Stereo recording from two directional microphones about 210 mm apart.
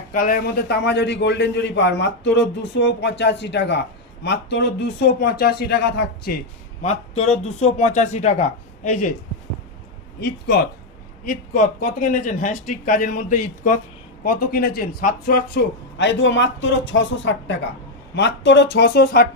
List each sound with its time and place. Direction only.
0.1 s a man's voice: 45° left (ahead or behind)
6.8 s a man's voice: 30° left (ahead or behind)
10.2 s speech: 50° left (ahead or behind)
11.3 s a man's voice: 40° left (ahead or behind)